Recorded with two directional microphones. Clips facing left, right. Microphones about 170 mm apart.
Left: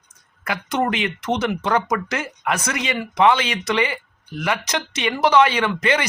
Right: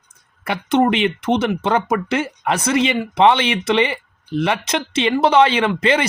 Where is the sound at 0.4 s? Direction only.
30° right (ahead or behind).